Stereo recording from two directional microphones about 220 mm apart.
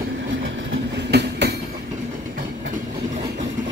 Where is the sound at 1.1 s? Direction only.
50° right (ahead or behind).